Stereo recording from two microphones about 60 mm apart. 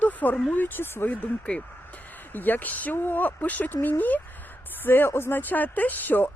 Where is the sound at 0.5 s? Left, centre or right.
Left.